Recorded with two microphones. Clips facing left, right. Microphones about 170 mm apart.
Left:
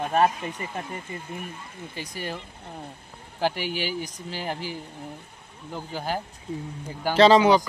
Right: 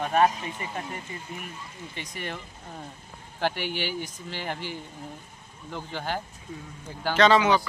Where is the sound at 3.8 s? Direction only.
40° left (ahead or behind).